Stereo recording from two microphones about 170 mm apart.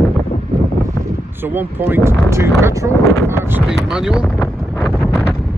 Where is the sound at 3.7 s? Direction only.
5° right (ahead or behind).